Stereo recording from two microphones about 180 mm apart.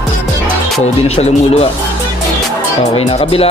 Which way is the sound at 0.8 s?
35° left (ahead or behind).